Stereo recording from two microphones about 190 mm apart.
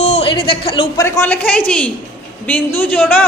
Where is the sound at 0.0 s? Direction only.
35° left (ahead or behind).